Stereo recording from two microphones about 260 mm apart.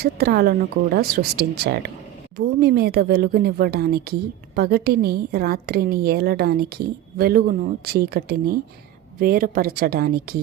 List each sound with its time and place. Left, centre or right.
0.0 s a woman's voice: right